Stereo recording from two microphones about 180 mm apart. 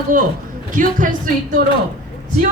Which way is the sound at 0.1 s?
45° right (ahead or behind).